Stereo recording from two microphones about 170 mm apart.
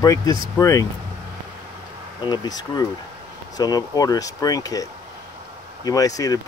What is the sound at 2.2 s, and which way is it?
Speech, 25° left (ahead or behind).